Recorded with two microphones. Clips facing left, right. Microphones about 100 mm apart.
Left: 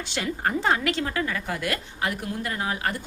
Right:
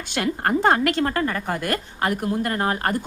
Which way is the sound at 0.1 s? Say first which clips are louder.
Right 5 dB; 55° right (ahead or behind).